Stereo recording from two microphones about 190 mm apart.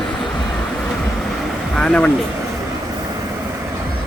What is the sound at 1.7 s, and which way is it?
Speech, 5° left (ahead or behind).